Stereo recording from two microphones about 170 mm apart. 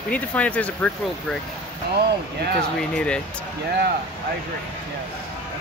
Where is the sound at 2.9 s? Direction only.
5° left (ahead or behind).